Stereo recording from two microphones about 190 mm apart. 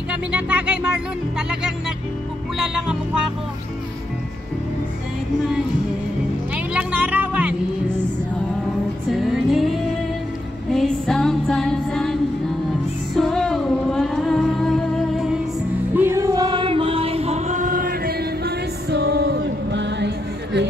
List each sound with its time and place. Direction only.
0.1 s speech: 5° right (ahead or behind)
2.5 s music: 5° right (ahead or behind)
6.5 s music: 5° right (ahead or behind)
9.1 s music: centre (ahead or behind)
15.9 s music: 10° right (ahead or behind); by 20.1 s 65° right (ahead or behind)